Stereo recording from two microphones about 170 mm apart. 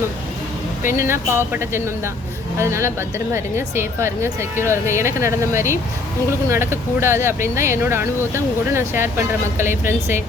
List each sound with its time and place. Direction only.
0.9 s speech: 15° right (ahead or behind)